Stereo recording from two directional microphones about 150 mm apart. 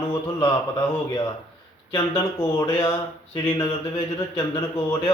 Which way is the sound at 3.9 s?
30° left (ahead or behind).